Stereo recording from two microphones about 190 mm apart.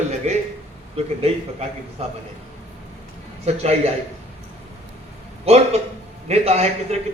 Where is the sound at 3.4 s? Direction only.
35° right (ahead or behind).